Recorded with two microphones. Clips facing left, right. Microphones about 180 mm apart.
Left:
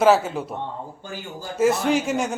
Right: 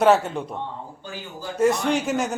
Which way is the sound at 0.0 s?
Centre (ahead or behind).